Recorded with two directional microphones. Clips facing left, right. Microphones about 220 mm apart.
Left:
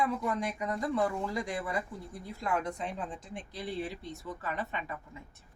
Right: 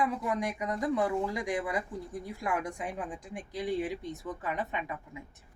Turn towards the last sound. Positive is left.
turn(degrees=-15)  # may be behind; listen again after turning